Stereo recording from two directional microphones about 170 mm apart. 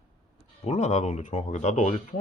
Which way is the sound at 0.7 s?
40° left (ahead or behind).